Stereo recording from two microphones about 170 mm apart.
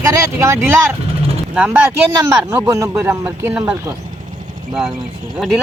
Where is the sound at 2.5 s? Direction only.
15° right (ahead or behind).